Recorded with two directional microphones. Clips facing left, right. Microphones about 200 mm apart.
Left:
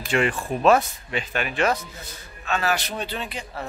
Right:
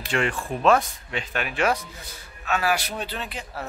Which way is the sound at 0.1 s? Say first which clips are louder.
Left 3 dB; 5° left (ahead or behind).